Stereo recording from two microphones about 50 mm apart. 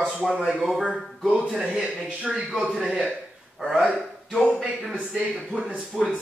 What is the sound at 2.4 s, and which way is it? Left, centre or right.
Speech, centre.